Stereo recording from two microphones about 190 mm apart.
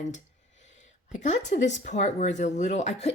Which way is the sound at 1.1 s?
40° left (ahead or behind).